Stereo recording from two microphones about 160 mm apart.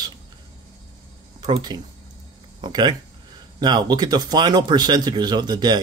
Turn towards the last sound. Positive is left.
turn(degrees=-25)  # may be behind; listen again after turning